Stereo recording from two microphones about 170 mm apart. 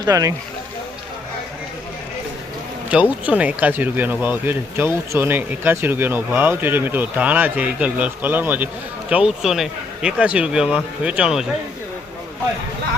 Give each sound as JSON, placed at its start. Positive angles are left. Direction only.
{"t": 0.0, "sound": "speech", "side_deg": -20}
{"t": 2.9, "sound": "speech", "side_deg": -10}